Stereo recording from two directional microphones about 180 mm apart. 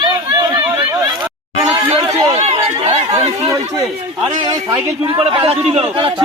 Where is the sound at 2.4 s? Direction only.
35° right (ahead or behind).